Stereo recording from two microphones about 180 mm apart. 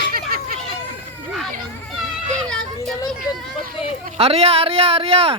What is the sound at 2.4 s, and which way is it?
Children playing, 5° left (ahead or behind).